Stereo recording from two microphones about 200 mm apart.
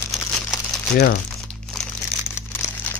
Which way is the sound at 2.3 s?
10° left (ahead or behind).